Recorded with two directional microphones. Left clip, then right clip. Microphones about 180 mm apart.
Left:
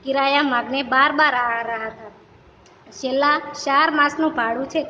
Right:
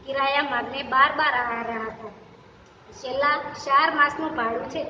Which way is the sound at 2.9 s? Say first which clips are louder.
Left 5 dB; 60° left (ahead or behind).